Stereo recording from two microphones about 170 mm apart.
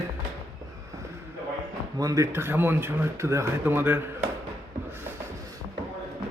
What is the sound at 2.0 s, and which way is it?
Speech, 20° right (ahead or behind).